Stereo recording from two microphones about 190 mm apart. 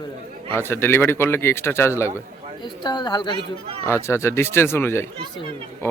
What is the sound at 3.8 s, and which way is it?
Speech, 15° left (ahead or behind).